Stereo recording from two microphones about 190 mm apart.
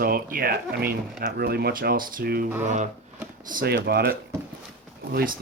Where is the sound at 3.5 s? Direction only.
50° right (ahead or behind).